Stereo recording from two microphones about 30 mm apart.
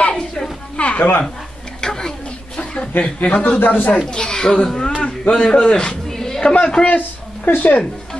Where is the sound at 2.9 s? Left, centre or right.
Left.